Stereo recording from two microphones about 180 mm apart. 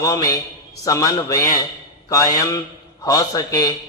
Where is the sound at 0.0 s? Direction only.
20° left (ahead or behind).